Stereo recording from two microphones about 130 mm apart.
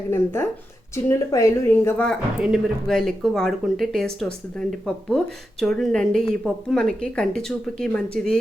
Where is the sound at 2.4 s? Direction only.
Centre (ahead or behind).